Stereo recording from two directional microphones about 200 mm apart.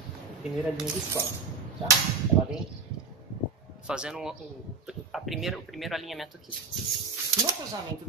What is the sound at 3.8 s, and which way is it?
Speech, 5° right (ahead or behind).